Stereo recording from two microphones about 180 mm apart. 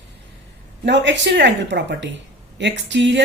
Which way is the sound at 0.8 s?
80° right.